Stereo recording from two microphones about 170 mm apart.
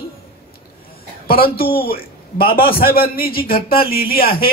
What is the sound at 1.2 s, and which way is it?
A man's voice, 60° left (ahead or behind).